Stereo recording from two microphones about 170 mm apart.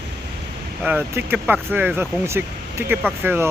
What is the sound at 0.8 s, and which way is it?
Speech, 10° right (ahead or behind).